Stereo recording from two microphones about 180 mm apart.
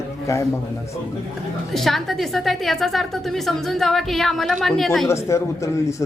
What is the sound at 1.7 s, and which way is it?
A woman's voice, centre (ahead or behind).